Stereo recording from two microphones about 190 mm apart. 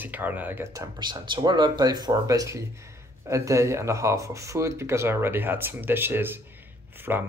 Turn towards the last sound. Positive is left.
turn(degrees=-10)  # may be behind; listen again after turning